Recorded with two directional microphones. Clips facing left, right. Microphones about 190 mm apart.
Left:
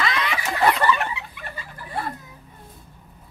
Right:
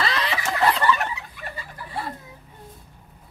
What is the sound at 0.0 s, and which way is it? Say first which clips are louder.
Snicker: even; 30° right (ahead or behind).